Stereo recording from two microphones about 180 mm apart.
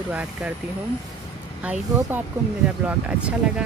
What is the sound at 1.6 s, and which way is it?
Speech, 5° right (ahead or behind).